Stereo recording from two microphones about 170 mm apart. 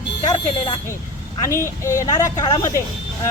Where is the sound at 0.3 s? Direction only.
25° left (ahead or behind).